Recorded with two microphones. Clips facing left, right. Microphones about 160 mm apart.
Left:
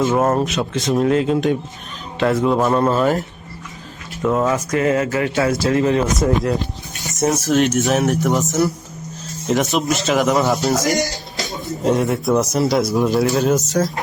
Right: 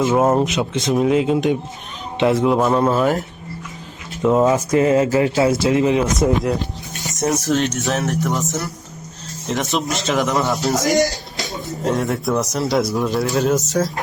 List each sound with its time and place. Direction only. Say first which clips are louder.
0.1 s speech: right 1 dB; 15° right (ahead or behind)
0.9 s speech: even; 5° right (ahead or behind)
4.2 s speech: right 3 dB; 20° right (ahead or behind)
5.8 s speech: even; 10° right (ahead or behind)
7.1 s speech: left 1 dB; centre (ahead or behind)
9.5 s speech: left 4 dB; 5° left (ahead or behind)
11.0 s music: right 3 dB; centre (ahead or behind)
12.4 s speech: left 2 dB; centre (ahead or behind)